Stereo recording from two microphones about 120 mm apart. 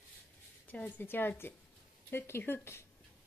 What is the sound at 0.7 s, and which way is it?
A woman's voice, 15° left (ahead or behind).